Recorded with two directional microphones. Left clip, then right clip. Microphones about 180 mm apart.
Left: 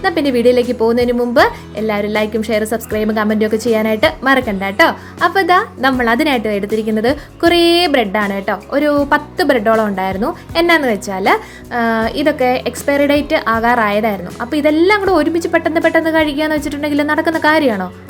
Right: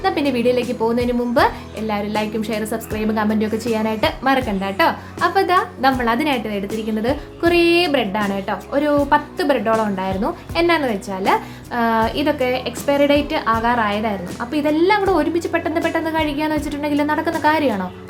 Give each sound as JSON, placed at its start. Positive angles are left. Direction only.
{"t": 0.0, "sound": "a woman's voice", "side_deg": 30}